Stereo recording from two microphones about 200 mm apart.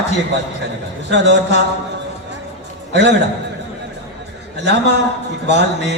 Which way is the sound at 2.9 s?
60° right (ahead or behind).